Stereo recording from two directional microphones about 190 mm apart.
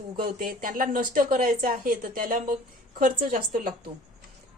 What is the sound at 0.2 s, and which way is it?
A woman's voice, 50° right (ahead or behind).